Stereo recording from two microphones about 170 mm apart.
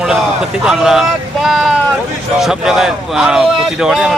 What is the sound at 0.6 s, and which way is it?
Speech, centre (ahead or behind).